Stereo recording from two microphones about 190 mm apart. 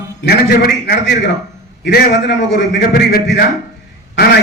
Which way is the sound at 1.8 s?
65° left (ahead or behind).